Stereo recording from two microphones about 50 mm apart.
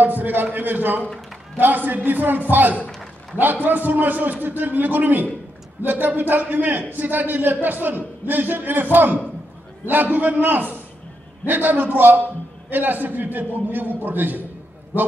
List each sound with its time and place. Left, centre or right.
0.0 s a man's voice: right